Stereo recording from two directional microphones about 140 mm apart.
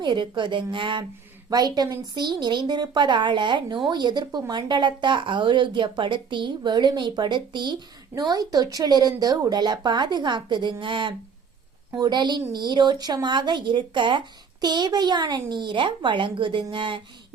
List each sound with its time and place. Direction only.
0.0 s speech: 35° right (ahead or behind)